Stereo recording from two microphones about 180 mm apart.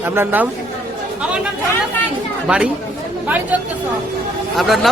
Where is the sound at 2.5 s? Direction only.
5° right (ahead or behind).